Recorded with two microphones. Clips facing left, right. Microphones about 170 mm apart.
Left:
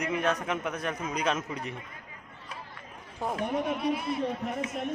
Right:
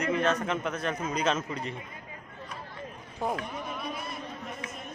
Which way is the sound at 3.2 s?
5° left (ahead or behind).